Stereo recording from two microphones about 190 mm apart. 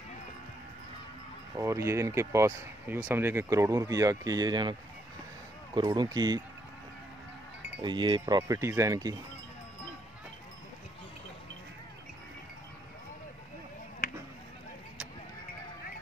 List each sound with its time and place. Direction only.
1.6 s speech: 15° right (ahead or behind)
5.8 s speech: 20° right (ahead or behind)
7.8 s speech: 25° right (ahead or behind)